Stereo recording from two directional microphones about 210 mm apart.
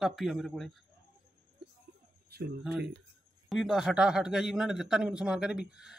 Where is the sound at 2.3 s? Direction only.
50° right (ahead or behind).